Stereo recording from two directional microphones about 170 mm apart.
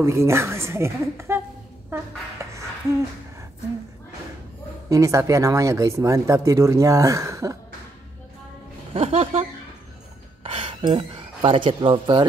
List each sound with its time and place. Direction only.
0.0 s a woman's voice: 15° right (ahead or behind)
2.4 s a sound: 15° right (ahead or behind)
4.8 s speech: 20° right (ahead or behind)
8.9 s speech: 35° right (ahead or behind)